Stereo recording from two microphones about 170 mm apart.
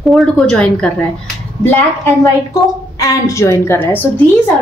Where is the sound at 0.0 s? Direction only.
Centre (ahead or behind).